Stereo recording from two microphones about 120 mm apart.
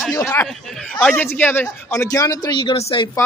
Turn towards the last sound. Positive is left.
turn(degrees=50)  # may be behind; listen again after turning